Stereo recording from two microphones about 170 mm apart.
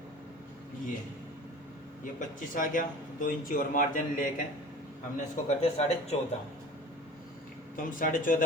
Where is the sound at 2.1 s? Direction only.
50° left (ahead or behind).